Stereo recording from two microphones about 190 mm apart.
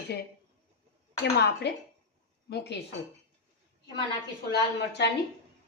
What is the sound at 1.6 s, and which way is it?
Speech, 60° left (ahead or behind).